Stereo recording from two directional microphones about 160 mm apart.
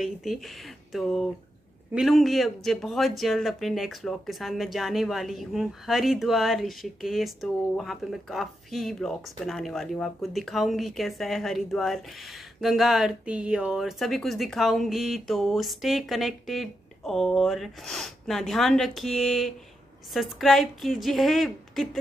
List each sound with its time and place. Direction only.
0.0 s speech: centre (ahead or behind)